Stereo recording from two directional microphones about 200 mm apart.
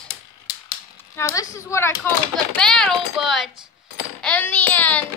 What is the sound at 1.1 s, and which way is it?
Child singing, 15° left (ahead or behind).